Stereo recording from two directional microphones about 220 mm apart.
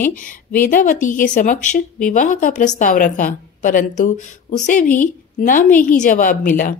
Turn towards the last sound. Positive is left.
turn(degrees=35)  # may be behind; listen again after turning